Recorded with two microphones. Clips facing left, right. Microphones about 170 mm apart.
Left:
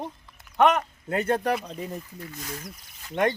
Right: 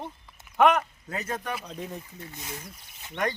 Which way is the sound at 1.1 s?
25° left (ahead or behind).